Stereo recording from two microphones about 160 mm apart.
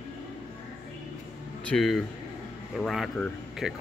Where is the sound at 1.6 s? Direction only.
5° left (ahead or behind).